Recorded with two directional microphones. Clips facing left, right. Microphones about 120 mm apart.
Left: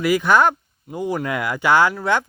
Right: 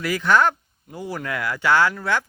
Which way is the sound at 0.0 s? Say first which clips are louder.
Left 3 dB; 15° left (ahead or behind).